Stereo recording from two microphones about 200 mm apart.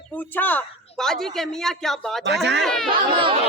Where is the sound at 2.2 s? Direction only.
60° right (ahead or behind).